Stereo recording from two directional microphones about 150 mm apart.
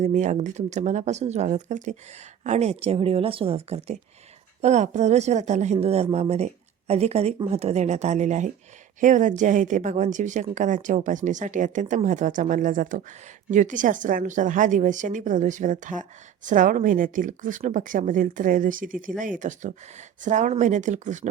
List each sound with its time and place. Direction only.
0.0 s a woman's voice: 50° right (ahead or behind)